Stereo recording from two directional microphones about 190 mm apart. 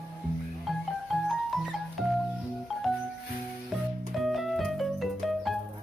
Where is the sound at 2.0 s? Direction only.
Centre (ahead or behind).